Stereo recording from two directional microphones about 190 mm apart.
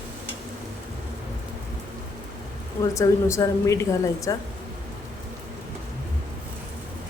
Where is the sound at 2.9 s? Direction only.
15° left (ahead or behind).